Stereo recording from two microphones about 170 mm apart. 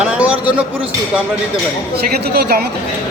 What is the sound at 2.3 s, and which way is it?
Speech, 65° right (ahead or behind).